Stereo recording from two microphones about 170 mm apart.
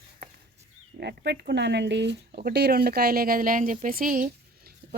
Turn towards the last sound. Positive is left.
turn(degrees=-60)  # may be behind; listen again after turning